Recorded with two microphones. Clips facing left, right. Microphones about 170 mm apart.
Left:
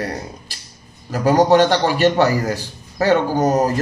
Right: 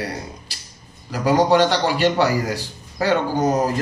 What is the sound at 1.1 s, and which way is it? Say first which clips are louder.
A man's voice: left 3 dB; 45° left (ahead or behind).